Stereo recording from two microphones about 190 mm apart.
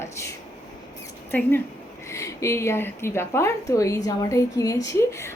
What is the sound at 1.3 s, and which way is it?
A woman's voice, 10° left (ahead or behind).